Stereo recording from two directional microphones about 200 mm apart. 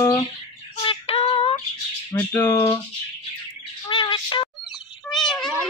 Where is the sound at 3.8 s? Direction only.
25° left (ahead or behind).